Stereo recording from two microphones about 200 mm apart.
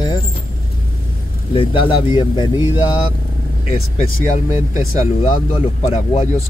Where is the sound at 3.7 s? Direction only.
30° left (ahead or behind).